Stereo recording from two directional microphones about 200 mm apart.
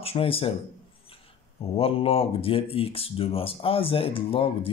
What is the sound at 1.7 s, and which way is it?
Speech, 30° left (ahead or behind).